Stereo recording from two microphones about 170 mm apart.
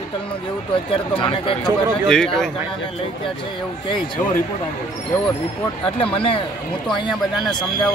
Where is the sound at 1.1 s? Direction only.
30° left (ahead or behind).